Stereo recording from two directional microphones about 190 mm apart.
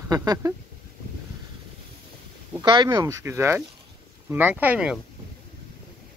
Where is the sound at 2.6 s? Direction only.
25° right (ahead or behind); by 4.9 s 5° right (ahead or behind).